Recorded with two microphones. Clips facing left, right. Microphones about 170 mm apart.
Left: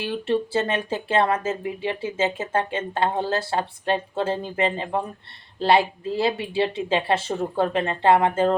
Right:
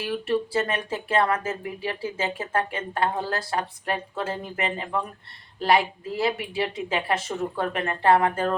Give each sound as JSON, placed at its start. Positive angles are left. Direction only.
{"t": 0.0, "sound": "speech", "side_deg": 25}